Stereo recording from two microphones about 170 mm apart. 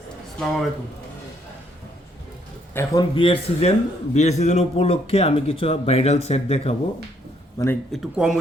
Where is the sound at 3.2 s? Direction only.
35° left (ahead or behind).